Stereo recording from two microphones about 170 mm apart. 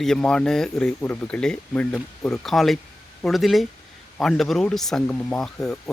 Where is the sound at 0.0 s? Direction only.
5° left (ahead or behind).